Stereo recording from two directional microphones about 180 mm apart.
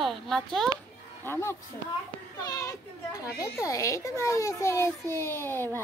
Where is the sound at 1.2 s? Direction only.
10° left (ahead or behind).